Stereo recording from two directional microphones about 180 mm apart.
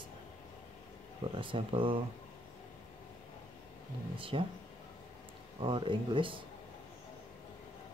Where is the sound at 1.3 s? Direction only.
30° right (ahead or behind).